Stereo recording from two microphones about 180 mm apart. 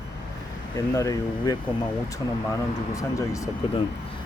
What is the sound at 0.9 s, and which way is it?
Speech, 20° left (ahead or behind).